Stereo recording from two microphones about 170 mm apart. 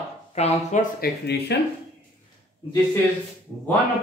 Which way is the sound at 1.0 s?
80° left.